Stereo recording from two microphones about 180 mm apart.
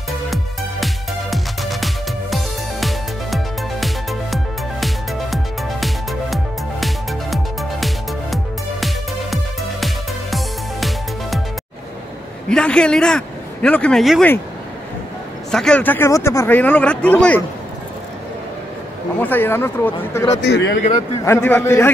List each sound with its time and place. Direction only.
0.3 s music: centre (ahead or behind)
8.8 s music: centre (ahead or behind)
12.4 s speech: 5° left (ahead or behind)
15.5 s speech: 5° left (ahead or behind)
19.2 s speech: 10° left (ahead or behind)
20.3 s speech: 80° left
21.3 s speech: 10° left (ahead or behind)